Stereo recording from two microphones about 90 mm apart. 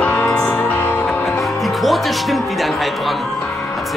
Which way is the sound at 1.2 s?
Centre (ahead or behind).